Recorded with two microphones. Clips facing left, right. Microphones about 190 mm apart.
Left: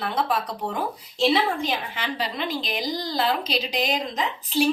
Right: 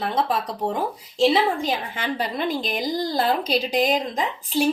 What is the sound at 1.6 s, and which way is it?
A woman's voice, 50° right (ahead or behind).